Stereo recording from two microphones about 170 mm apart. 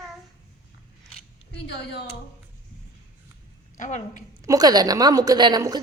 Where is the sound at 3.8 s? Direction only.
45° left (ahead or behind).